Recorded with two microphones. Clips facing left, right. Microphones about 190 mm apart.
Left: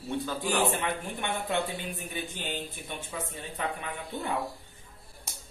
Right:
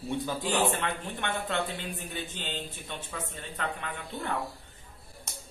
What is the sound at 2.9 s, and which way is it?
Speech, 10° left (ahead or behind).